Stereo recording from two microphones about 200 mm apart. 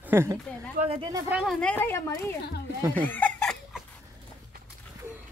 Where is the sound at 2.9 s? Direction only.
10° left (ahead or behind).